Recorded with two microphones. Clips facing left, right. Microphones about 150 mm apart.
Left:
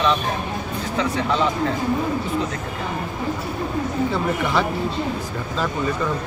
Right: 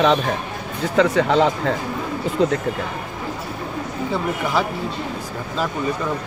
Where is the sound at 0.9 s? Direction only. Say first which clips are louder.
Right 6 dB; 90° right.